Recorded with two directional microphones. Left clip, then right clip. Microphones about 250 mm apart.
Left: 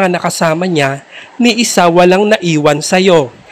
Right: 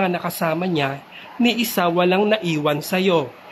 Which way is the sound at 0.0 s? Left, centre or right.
Left.